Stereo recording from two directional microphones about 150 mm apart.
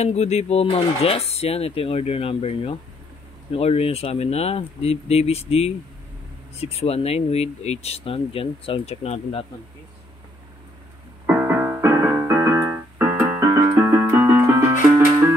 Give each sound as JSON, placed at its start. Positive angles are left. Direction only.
{"t": 0.0, "sound": "speech", "side_deg": 45}
{"t": 11.2, "sound": "music", "side_deg": -10}